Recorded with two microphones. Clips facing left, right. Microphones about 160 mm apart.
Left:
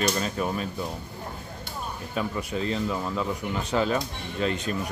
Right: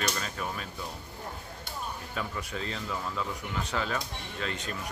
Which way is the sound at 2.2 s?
15° left (ahead or behind).